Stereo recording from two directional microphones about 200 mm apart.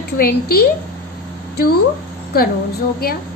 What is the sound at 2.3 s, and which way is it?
Speech, 50° left (ahead or behind).